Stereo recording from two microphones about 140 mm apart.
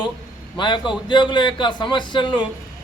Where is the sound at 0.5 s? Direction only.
35° left (ahead or behind).